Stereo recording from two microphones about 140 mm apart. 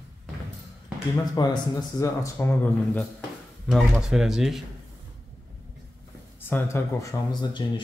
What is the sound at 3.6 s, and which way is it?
Speech, centre (ahead or behind).